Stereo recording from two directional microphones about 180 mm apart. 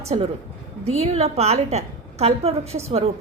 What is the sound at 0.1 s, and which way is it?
A woman's voice, 30° right (ahead or behind).